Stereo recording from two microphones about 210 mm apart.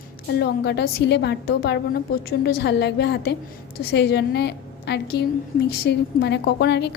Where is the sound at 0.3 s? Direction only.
55° left (ahead or behind).